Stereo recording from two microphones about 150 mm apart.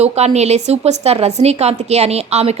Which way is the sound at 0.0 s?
45° right (ahead or behind).